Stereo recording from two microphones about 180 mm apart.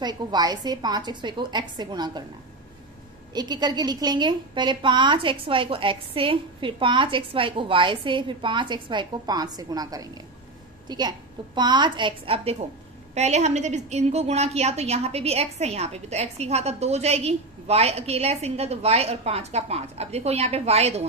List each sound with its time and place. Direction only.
0.0 s a woman's voice: 25° right (ahead or behind)
3.3 s a woman's voice: 25° right (ahead or behind)